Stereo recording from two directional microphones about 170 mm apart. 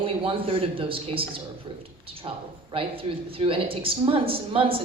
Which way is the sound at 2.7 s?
35° right (ahead or behind).